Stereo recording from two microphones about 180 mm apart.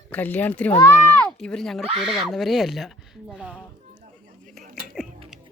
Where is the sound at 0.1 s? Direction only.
10° left (ahead or behind).